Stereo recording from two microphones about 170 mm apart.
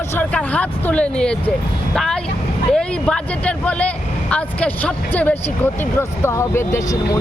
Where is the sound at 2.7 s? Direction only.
5° left (ahead or behind).